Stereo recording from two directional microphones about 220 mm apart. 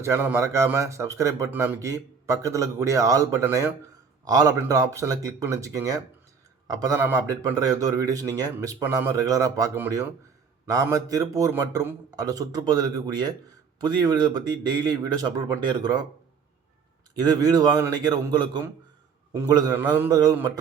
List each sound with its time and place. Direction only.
0.0 s a man's voice: 10° right (ahead or behind)
17.2 s a man's voice: 15° right (ahead or behind)